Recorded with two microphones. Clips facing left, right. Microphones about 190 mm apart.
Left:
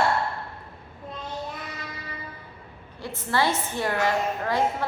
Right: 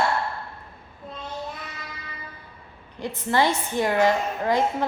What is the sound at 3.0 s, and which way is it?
A woman's voice, 15° right (ahead or behind).